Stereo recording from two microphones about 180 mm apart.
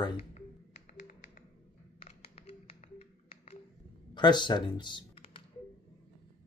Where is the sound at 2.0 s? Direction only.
35° left (ahead or behind).